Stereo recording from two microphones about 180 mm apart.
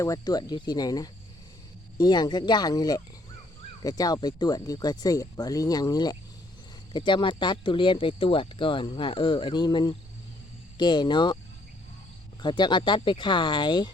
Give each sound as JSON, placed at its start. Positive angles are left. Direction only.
{"t": 0.0, "sound": "speech", "side_deg": 20}
{"t": 12.4, "sound": "speech", "side_deg": 25}